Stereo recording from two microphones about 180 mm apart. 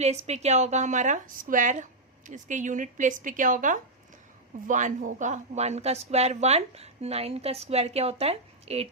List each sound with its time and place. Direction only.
0.0 s a woman's voice: 35° right (ahead or behind)